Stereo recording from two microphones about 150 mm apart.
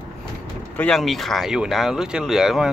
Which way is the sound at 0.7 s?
5° left (ahead or behind).